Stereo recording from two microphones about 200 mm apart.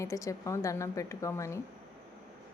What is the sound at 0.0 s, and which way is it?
A woman's voice, 15° left (ahead or behind).